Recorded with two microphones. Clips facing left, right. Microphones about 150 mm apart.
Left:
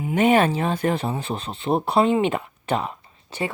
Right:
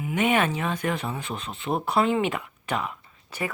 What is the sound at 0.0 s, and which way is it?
Speech, 35° left (ahead or behind).